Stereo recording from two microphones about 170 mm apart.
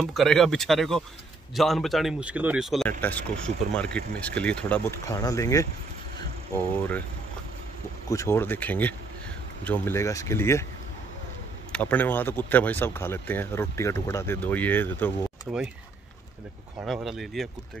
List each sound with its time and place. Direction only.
0.0 s a man's voice: centre (ahead or behind); by 5.7 s 20° left (ahead or behind)
8.1 s speech: 15° left (ahead or behind)
11.7 s speech: 10° left (ahead or behind)
16.8 s a man's voice: centre (ahead or behind)